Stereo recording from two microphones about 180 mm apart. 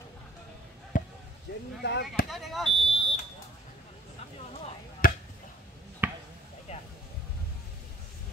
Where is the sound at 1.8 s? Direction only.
70° left (ahead or behind).